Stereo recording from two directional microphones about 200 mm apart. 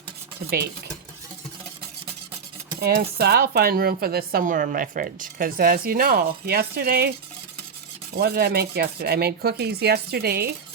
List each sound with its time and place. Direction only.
2.8 s speech: 50° right (ahead or behind)
8.1 s speech: 50° right (ahead or behind)